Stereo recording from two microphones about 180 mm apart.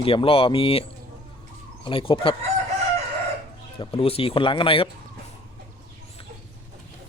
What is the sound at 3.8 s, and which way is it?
Speech, 30° left (ahead or behind).